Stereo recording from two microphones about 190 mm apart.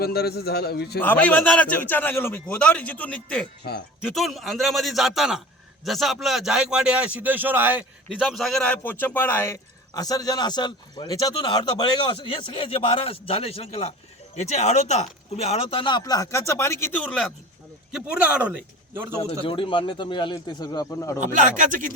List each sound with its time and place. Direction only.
0.0 s a man's voice: 55° left (ahead or behind)
1.0 s a man's voice: 10° left (ahead or behind)
3.6 s a man's voice: 65° left (ahead or behind)
4.0 s a man's voice: centre (ahead or behind)
17.9 s a man's voice: 5° right (ahead or behind)
19.5 s a man's voice: 25° left (ahead or behind)
21.3 s speech: 40° right (ahead or behind)